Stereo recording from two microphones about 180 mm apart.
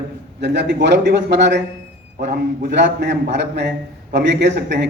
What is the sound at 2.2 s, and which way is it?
A man's voice, 65° right (ahead or behind).